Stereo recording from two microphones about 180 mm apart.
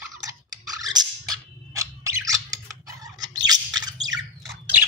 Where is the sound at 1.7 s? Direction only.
20° right (ahead or behind).